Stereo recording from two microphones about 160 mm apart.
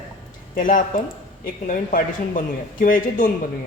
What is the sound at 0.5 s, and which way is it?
A woman's voice, 55° left (ahead or behind).